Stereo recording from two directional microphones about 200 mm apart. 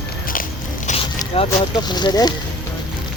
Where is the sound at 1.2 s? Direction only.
20° left (ahead or behind).